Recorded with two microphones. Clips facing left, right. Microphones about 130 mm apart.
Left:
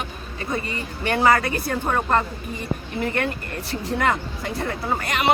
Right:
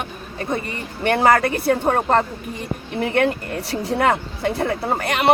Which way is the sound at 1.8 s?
40° right (ahead or behind).